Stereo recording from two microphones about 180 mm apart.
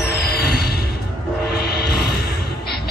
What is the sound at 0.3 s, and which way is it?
Music, 60° left (ahead or behind).